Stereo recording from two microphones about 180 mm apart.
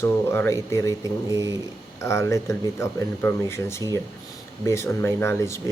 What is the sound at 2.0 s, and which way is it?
Speech, 15° left (ahead or behind).